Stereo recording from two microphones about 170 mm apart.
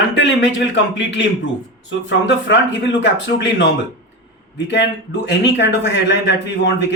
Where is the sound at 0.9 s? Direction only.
90° left.